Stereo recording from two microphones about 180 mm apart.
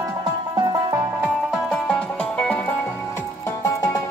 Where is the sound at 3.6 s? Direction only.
20° left (ahead or behind).